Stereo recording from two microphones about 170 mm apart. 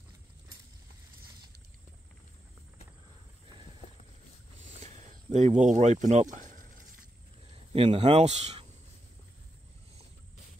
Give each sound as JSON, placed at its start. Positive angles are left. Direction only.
{"t": 4.8, "sound": "speech", "side_deg": -40}
{"t": 7.7, "sound": "speech", "side_deg": -35}